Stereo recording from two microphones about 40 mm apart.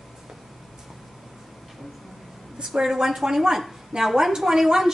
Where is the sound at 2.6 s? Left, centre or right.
Centre.